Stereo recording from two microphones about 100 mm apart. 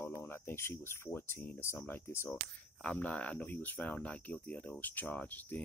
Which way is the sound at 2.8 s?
10° left (ahead or behind).